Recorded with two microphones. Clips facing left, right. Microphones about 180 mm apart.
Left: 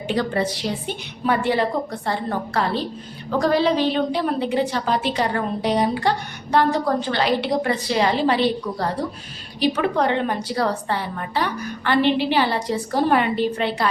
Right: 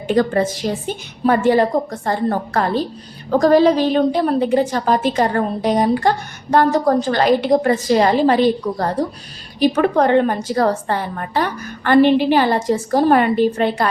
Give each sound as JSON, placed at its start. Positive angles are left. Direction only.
{"t": 0.1, "sound": "a woman's voice", "side_deg": -45}